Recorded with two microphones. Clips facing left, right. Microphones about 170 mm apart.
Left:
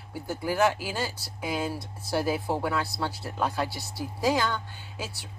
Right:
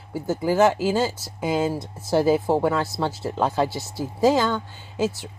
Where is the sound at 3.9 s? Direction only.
45° right (ahead or behind).